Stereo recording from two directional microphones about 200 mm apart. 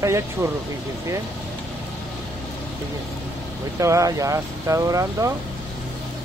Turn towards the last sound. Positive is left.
turn(degrees=-15)  # may be behind; listen again after turning